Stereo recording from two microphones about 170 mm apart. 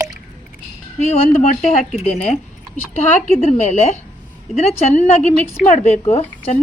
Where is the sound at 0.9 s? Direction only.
45° left (ahead or behind).